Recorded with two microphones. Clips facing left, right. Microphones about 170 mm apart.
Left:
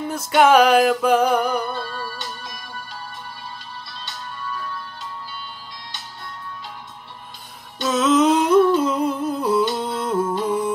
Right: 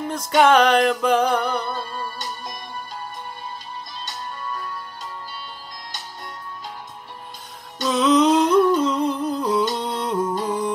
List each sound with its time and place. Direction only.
0.1 s music: 5° left (ahead or behind)
2.0 s music: 45° right (ahead or behind)
7.8 s humming: centre (ahead or behind)